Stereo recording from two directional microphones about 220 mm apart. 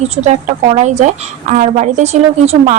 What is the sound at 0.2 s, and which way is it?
A woman's voice, 30° right (ahead or behind).